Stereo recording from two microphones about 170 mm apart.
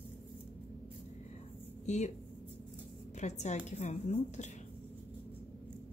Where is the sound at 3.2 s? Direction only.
45° left (ahead or behind).